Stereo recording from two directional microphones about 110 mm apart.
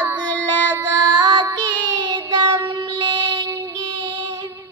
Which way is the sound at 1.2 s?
45° right (ahead or behind).